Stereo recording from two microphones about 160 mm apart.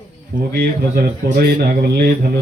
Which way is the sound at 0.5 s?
70° right (ahead or behind).